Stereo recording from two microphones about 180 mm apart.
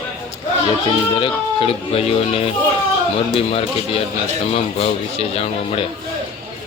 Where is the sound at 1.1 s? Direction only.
30° left (ahead or behind).